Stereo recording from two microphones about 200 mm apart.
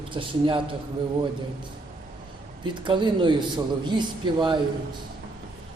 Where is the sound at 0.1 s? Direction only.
25° right (ahead or behind).